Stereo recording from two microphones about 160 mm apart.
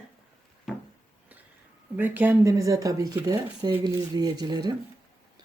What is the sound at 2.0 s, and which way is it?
Speech, 10° right (ahead or behind).